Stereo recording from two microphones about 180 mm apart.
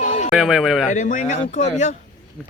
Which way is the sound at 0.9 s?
45° left (ahead or behind).